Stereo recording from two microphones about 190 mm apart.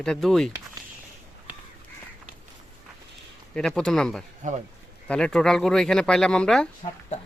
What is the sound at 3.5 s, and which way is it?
Speech, 5° left (ahead or behind).